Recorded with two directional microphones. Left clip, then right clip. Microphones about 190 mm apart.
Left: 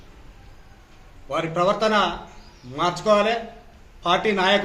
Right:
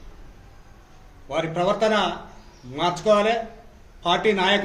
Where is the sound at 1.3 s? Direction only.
25° right (ahead or behind).